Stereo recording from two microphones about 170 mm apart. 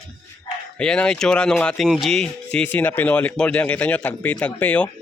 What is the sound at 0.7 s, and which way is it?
Speech, 5° left (ahead or behind).